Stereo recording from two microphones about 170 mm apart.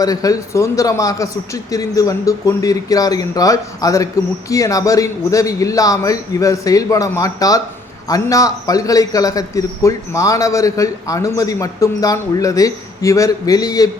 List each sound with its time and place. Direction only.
0.0 s a man's voice: 20° left (ahead or behind)